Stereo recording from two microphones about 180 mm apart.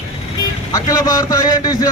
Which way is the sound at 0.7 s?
20° left (ahead or behind).